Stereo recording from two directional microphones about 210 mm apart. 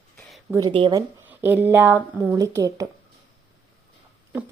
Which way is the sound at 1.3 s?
10° right (ahead or behind).